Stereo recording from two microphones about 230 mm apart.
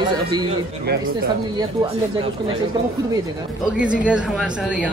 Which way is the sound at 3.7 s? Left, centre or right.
Centre.